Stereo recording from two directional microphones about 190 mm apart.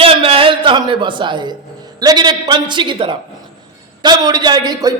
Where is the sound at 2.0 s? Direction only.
20° right (ahead or behind).